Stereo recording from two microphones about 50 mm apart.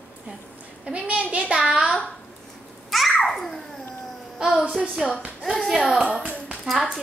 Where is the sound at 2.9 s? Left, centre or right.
Centre.